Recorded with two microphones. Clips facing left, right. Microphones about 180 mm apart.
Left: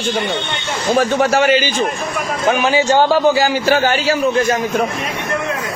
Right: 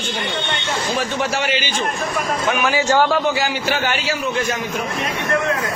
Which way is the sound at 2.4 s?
30° left (ahead or behind).